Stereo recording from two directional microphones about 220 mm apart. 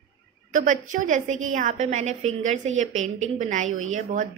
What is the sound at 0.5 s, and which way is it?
Speech, 35° right (ahead or behind).